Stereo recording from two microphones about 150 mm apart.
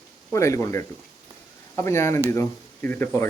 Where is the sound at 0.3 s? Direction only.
20° left (ahead or behind).